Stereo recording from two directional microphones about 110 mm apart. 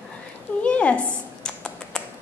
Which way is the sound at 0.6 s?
10° left (ahead or behind).